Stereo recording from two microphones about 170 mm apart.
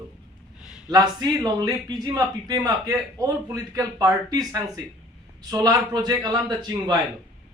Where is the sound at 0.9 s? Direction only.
20° right (ahead or behind).